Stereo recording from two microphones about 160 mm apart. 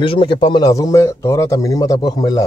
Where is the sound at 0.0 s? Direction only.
30° left (ahead or behind).